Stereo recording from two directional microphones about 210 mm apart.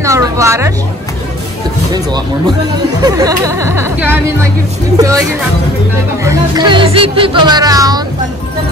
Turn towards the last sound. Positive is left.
turn(degrees=-15)  # may be behind; listen again after turning